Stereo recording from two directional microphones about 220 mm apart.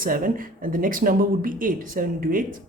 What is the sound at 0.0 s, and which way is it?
Speech, 40° right (ahead or behind).